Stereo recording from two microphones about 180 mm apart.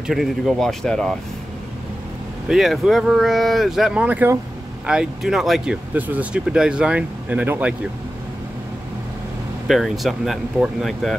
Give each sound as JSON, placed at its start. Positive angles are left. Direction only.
{"t": 0.0, "sound": "speech", "side_deg": 0}
{"t": 2.4, "sound": "speech", "side_deg": 0}
{"t": 9.7, "sound": "speech", "side_deg": 0}